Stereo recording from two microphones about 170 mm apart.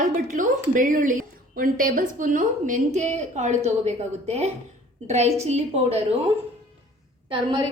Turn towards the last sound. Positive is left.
turn(degrees=-30)  # may be behind; listen again after turning